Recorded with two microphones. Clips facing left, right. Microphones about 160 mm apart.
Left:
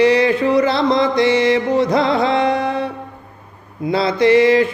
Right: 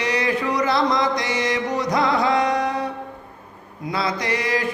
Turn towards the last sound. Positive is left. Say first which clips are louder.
# left 12 dB
turn(degrees=25)  # may be behind; listen again after turning